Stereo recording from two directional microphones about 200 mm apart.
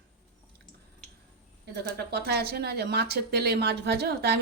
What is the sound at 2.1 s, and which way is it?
Speech, 55° right (ahead or behind).